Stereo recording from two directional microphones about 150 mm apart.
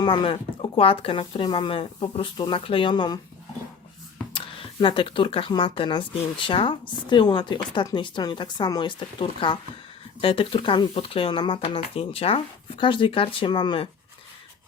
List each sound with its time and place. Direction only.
0.0 s speech: 30° left (ahead or behind)
4.4 s speech: 35° left (ahead or behind)